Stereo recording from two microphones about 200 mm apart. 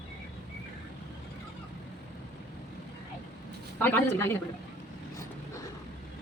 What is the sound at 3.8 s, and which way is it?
Speech, 10° left (ahead or behind).